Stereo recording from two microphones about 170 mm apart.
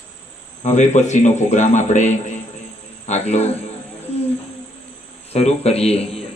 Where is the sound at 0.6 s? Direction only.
45° left (ahead or behind).